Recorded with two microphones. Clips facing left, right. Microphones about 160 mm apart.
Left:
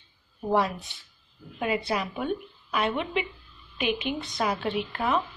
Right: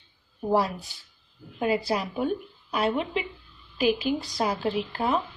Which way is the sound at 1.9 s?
30° right (ahead or behind).